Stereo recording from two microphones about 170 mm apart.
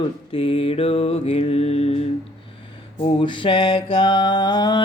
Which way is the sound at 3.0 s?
30° left (ahead or behind).